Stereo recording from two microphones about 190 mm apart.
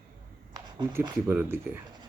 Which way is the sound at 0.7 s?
20° right (ahead or behind).